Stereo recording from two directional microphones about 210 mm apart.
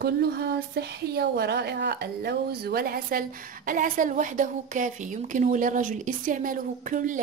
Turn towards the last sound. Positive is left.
turn(degrees=-40)  # may be behind; listen again after turning